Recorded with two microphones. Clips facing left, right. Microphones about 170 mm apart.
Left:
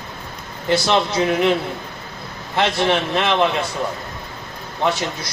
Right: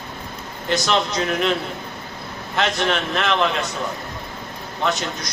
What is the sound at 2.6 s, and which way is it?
Speech, 25° left (ahead or behind).